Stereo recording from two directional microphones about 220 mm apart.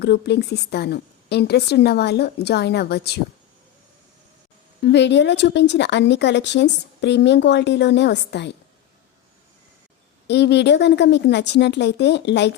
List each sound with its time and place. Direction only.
0.0 s speech: 50° left (ahead or behind)
4.8 s speech: 50° left (ahead or behind)
10.2 s speech: 50° left (ahead or behind)